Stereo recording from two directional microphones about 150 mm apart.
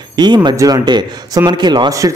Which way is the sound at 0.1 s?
30° right (ahead or behind).